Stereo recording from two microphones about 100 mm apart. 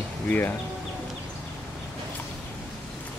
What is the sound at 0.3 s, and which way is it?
Speech, 20° left (ahead or behind).